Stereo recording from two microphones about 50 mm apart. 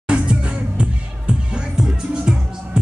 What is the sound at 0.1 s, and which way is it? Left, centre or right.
Music, right.